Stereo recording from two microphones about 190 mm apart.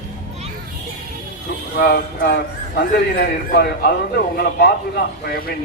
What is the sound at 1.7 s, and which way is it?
Speech, 50° left (ahead or behind).